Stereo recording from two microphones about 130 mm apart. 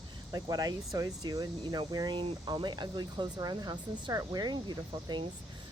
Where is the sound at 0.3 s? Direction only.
30° right (ahead or behind).